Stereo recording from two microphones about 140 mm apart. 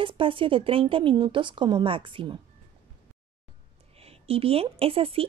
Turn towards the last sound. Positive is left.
turn(degrees=-40)  # may be behind; listen again after turning